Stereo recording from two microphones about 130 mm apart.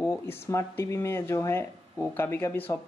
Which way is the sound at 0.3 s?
20° left (ahead or behind).